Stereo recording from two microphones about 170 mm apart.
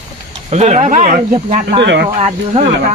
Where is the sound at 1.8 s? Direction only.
90° right.